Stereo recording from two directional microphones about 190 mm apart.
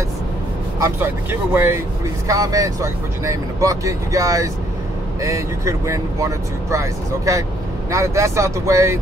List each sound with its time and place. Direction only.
0.7 s speech: 15° right (ahead or behind)